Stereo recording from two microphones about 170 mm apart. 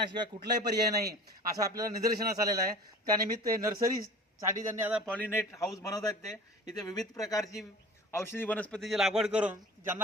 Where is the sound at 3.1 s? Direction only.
20° right (ahead or behind).